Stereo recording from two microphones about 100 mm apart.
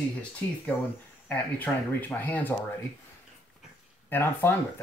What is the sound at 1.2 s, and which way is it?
Speech, 15° left (ahead or behind).